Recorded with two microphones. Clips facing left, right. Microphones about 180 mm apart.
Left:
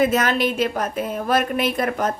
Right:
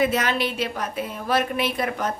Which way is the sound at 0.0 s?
45° left (ahead or behind).